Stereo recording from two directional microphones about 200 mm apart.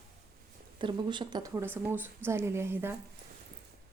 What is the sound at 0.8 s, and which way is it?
A woman's voice, 25° right (ahead or behind).